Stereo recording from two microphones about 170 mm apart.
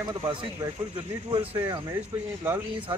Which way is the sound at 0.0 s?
25° right (ahead or behind).